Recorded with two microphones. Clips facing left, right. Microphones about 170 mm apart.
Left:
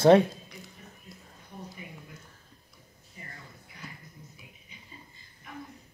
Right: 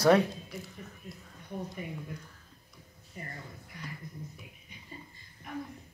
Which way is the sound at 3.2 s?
50° right (ahead or behind).